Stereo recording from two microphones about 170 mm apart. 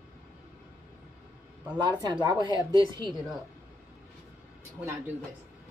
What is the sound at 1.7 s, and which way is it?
Speech, 25° right (ahead or behind).